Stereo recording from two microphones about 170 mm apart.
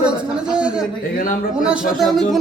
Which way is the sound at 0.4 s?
5° right (ahead or behind).